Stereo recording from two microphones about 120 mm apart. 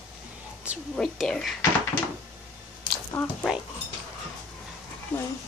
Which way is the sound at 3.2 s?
15° left (ahead or behind).